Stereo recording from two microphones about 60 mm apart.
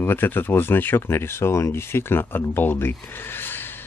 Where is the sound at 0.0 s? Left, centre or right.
Left.